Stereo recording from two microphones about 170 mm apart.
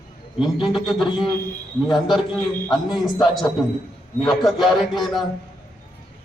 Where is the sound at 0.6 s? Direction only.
30° left (ahead or behind).